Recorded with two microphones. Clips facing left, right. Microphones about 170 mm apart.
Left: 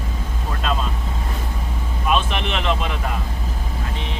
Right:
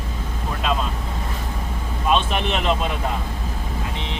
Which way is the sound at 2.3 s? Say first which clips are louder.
Right 1 dB; 35° right (ahead or behind).